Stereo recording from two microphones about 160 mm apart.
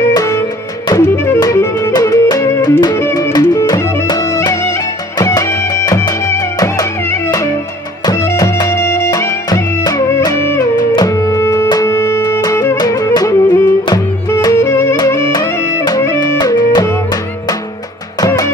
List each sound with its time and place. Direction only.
0.1 s music: 20° left (ahead or behind)
18.2 s music: 20° left (ahead or behind)